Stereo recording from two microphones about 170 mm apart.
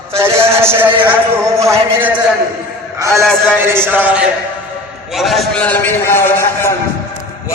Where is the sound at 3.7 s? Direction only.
15° right (ahead or behind); by 6.7 s 15° left (ahead or behind).